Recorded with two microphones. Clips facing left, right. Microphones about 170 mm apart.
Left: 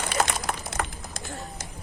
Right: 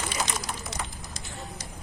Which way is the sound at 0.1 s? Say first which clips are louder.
Left 5 dB; 55° left (ahead or behind).